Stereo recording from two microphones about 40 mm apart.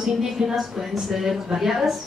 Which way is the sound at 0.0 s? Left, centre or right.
Centre.